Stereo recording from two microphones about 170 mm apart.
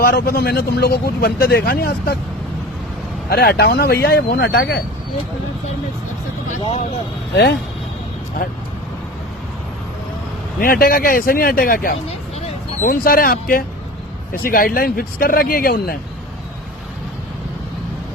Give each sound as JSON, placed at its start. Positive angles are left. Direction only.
{"t": 0.0, "sound": "speech", "side_deg": 65}
{"t": 3.2, "sound": "speech", "side_deg": 65}
{"t": 6.6, "sound": "speech", "side_deg": 35}
{"t": 8.4, "sound": "speech", "side_deg": 60}
{"t": 10.6, "sound": "speech", "side_deg": 60}